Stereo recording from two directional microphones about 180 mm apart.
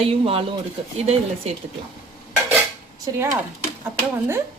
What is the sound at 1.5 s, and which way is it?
Speech, 35° right (ahead or behind).